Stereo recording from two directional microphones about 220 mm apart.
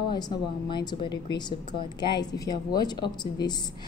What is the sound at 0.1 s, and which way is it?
A woman's voice, 20° left (ahead or behind).